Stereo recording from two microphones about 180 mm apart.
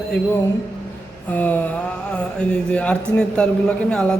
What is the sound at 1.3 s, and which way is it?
Speech, 10° left (ahead or behind).